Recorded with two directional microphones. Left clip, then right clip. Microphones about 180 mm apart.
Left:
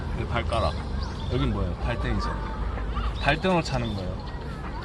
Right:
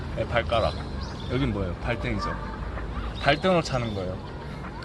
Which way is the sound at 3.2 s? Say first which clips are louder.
Right 2 dB; 35° right (ahead or behind).